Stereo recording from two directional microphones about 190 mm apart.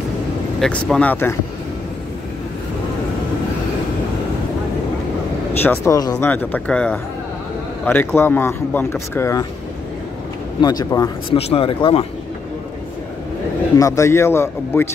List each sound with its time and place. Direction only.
0.6 s speech: 5° left (ahead or behind)
5.6 s speech: 15° left (ahead or behind)
10.6 s speech: 20° left (ahead or behind)
11.3 s speech: 30° left (ahead or behind)
13.7 s speech: 15° left (ahead or behind)